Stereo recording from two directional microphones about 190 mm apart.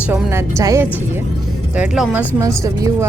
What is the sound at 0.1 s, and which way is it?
Speech, 10° right (ahead or behind).